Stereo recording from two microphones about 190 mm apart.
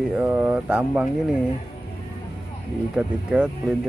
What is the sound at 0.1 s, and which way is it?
Speech, 10° right (ahead or behind).